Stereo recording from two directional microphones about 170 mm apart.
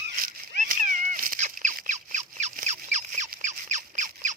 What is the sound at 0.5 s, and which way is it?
Cat, 50° right (ahead or behind).